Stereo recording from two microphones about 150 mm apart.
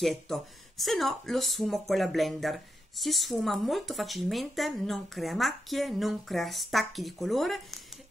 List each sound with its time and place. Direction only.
0.0 s speech: centre (ahead or behind)